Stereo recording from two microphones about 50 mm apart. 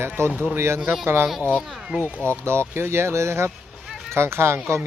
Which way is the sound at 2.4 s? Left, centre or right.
Right.